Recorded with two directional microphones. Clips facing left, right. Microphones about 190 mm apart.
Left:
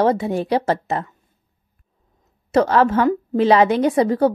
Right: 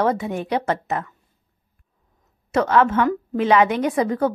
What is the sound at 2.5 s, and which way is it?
A woman's voice, 35° left (ahead or behind).